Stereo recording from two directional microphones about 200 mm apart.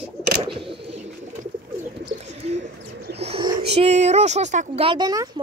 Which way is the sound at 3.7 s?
35° right (ahead or behind).